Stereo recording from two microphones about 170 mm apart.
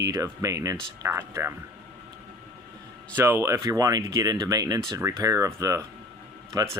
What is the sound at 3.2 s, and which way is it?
Speech, 15° right (ahead or behind).